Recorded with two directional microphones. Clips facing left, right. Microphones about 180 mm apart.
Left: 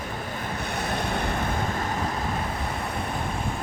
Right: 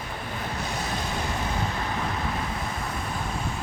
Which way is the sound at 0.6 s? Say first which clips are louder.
Left 4 dB; 60° left (ahead or behind).